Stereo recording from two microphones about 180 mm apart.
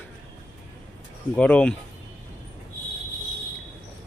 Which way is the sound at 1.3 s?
5° left (ahead or behind).